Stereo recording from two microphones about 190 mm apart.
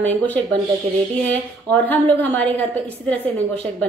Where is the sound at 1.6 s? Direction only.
10° left (ahead or behind).